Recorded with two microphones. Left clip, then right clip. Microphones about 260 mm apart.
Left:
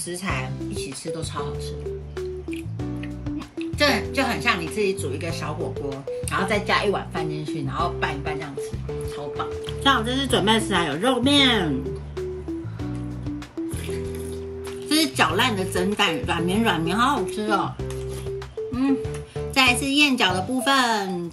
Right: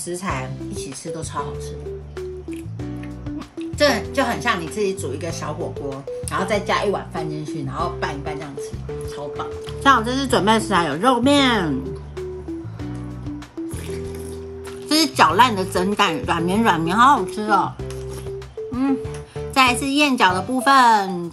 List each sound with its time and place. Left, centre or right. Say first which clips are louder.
0.1 s speech: right 3 dB; centre
3.7 s speech: right 3 dB; centre
9.4 s speech: right 2 dB; centre
14.9 s a woman's voice: right 5 dB; centre
19.5 s speech: right 2 dB; centre